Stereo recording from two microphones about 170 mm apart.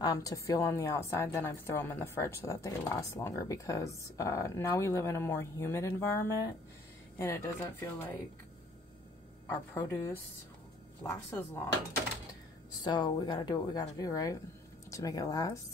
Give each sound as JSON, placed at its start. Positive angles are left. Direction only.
{"t": 0.0, "sound": "a woman's voice", "side_deg": 20}
{"t": 9.5, "sound": "a woman's voice", "side_deg": 15}
{"t": 12.8, "sound": "speech", "side_deg": 25}